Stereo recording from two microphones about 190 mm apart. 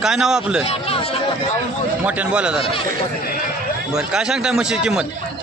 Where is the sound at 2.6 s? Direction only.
30° left (ahead or behind).